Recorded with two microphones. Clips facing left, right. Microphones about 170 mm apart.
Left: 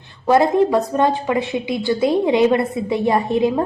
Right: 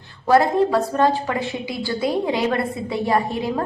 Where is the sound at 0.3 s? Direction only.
20° left (ahead or behind).